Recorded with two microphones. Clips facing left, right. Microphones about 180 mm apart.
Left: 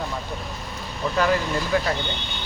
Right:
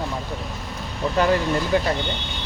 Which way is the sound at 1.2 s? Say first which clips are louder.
Right 2 dB; 25° right (ahead or behind).